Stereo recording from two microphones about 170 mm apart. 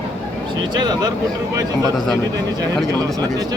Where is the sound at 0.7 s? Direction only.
25° right (ahead or behind).